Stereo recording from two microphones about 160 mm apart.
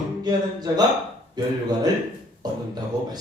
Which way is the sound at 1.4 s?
25° right (ahead or behind).